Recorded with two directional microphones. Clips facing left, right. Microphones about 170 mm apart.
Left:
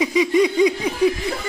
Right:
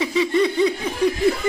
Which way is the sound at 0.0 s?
15° left (ahead or behind).